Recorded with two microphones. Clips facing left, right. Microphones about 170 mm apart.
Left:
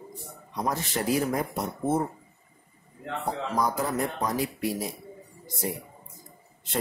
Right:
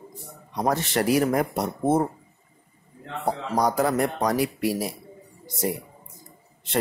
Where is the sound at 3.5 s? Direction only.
75° right (ahead or behind).